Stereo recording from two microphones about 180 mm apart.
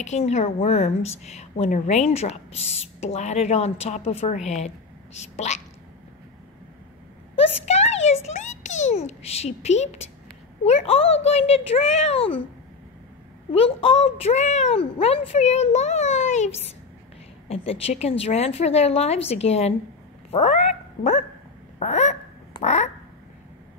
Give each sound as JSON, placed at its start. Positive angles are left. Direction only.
{"t": 0.0, "sound": "a woman's voice", "side_deg": 40}
{"t": 7.3, "sound": "a sound", "side_deg": 35}
{"t": 10.6, "sound": "a woman's voice", "side_deg": 35}
{"t": 13.5, "sound": "a woman's voice", "side_deg": 30}
{"t": 20.2, "sound": "quack", "side_deg": 35}